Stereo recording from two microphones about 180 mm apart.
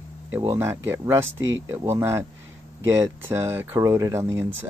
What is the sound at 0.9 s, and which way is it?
Speech, 15° right (ahead or behind).